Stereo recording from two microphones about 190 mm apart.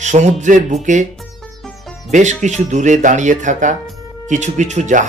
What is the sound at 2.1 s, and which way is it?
Speech, 40° right (ahead or behind).